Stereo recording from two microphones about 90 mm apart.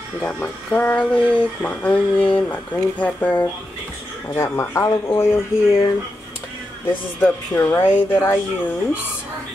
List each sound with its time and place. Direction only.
0.7 s speech: 20° left (ahead or behind)
6.9 s speech: 25° left (ahead or behind)